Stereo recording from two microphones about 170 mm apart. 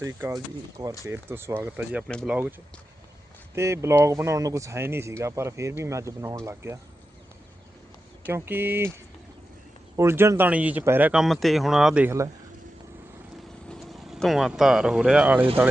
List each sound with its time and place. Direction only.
0.0 s speech: 15° right (ahead or behind)
8.3 s speech: 15° right (ahead or behind)
9.9 s speech: 15° right (ahead or behind)
13.7 s speech: centre (ahead or behind)